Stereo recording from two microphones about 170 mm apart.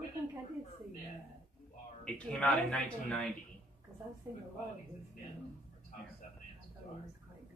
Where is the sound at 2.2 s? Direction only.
5° left (ahead or behind).